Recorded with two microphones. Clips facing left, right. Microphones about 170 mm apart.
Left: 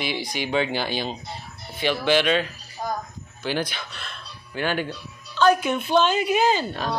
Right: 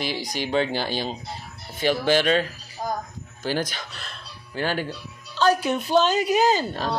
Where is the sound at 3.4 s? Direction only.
40° right (ahead or behind).